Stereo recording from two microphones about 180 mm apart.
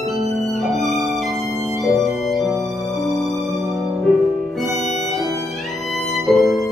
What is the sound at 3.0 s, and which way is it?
Music, centre (ahead or behind).